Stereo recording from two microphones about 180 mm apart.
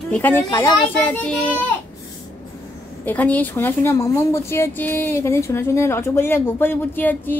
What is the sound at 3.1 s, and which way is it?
A woman's voice, 10° left (ahead or behind).